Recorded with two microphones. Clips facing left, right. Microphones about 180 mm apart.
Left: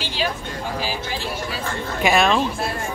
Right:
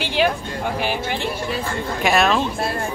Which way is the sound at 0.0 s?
60° right (ahead or behind).